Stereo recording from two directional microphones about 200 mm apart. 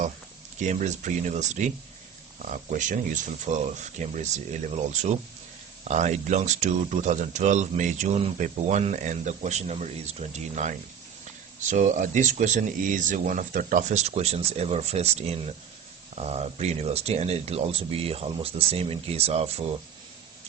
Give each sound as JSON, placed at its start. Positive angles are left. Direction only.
{"t": 0.6, "sound": "speech", "side_deg": -35}
{"t": 5.8, "sound": "speech", "side_deg": -35}